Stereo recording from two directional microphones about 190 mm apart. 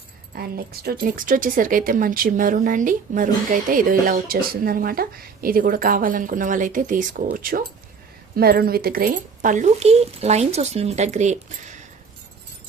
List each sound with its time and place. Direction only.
0.3 s speech: 55° right (ahead or behind)